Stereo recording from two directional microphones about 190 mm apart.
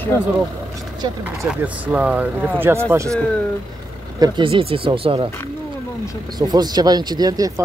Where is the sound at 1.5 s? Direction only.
10° right (ahead or behind).